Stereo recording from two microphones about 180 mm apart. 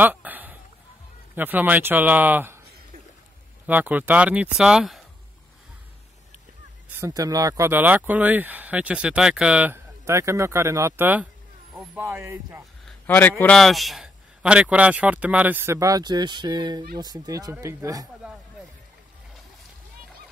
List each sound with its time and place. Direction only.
0.0 s a sound: 10° right (ahead or behind)
1.3 s speech: 10° right (ahead or behind)
3.6 s speech: 10° right (ahead or behind)
6.9 s speech: 15° right (ahead or behind)
12.8 s a sound: 10° left (ahead or behind)
13.4 s speech: 5° left (ahead or behind); by 18.0 s 15° right (ahead or behind)